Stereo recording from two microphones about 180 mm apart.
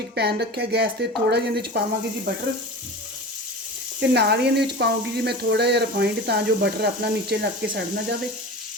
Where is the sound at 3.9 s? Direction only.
70° right (ahead or behind).